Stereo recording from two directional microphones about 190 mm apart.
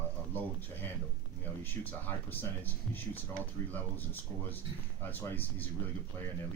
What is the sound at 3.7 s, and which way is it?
Speech, 10° left (ahead or behind).